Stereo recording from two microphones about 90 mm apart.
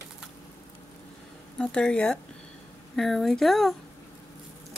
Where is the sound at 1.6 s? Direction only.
10° left (ahead or behind).